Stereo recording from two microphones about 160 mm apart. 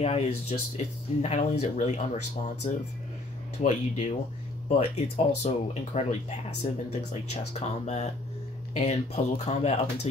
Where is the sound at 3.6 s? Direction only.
50° left (ahead or behind).